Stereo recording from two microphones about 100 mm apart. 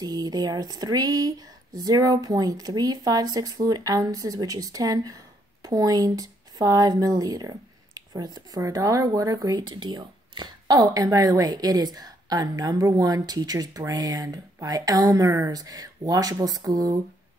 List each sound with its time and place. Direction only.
0.0 s speech: 45° right (ahead or behind)